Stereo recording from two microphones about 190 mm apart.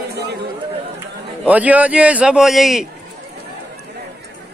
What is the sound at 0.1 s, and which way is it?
Chatter, 60° right (ahead or behind).